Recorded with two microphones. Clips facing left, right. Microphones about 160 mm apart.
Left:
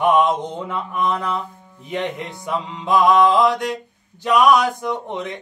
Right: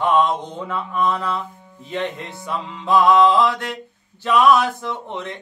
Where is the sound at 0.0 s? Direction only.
15° left (ahead or behind).